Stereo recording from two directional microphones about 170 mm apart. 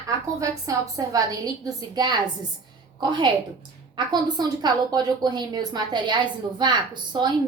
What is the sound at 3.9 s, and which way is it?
A woman's voice, 25° right (ahead or behind).